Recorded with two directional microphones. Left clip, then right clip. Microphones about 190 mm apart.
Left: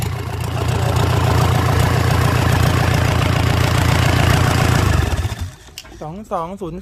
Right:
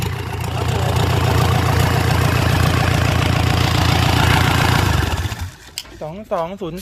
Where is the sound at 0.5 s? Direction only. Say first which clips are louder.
Even; 20° left (ahead or behind).